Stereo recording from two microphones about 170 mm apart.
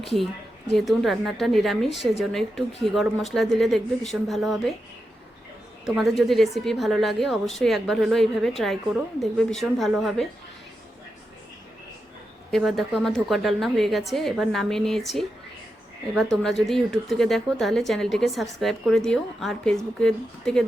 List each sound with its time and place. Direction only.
0.0 s a woman's voice: centre (ahead or behind)
5.8 s a woman's voice: centre (ahead or behind)
12.5 s a woman's voice: centre (ahead or behind)